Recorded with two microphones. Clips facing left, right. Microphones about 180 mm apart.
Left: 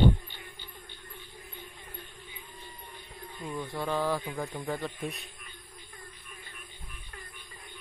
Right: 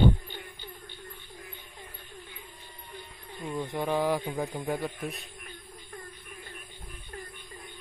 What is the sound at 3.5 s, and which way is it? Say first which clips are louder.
Speech: right 3 dB; 20° right (ahead or behind).